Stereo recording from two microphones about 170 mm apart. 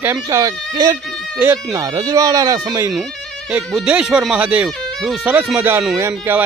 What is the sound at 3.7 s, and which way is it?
A man's voice, 5° right (ahead or behind).